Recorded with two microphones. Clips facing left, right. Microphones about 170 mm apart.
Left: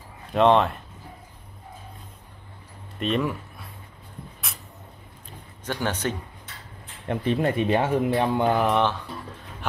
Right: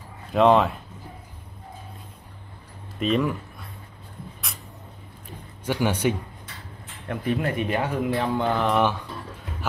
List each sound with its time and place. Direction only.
0.3 s speech: centre (ahead or behind)
3.0 s speech: centre (ahead or behind)
4.5 s a sound: centre (ahead or behind)
5.7 s speech: 10° right (ahead or behind)
7.1 s speech: 25° left (ahead or behind)
8.7 s speech: 10° right (ahead or behind)